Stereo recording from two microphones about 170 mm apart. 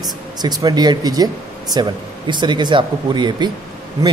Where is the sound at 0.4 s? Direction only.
25° right (ahead or behind).